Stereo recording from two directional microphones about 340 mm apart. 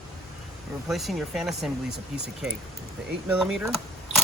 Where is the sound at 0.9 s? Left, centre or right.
Centre.